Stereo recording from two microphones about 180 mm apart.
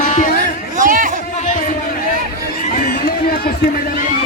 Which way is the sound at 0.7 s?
45° right (ahead or behind).